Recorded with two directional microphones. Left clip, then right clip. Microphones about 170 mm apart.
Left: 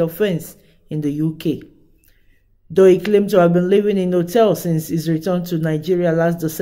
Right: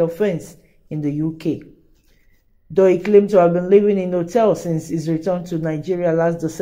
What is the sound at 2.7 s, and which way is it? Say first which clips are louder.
Speech: left 1 dB; 25° left (ahead or behind).